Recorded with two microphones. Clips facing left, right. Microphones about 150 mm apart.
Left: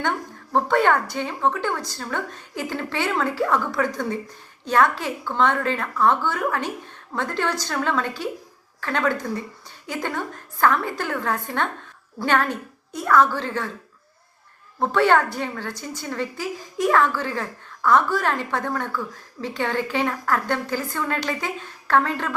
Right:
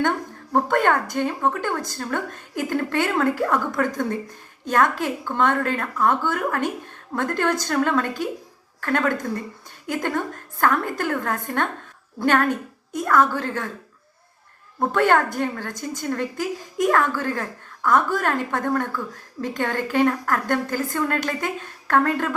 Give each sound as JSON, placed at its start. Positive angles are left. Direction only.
{"t": 0.5, "sound": "a woman's voice", "side_deg": -50}
{"t": 14.9, "sound": "a woman's voice", "side_deg": -50}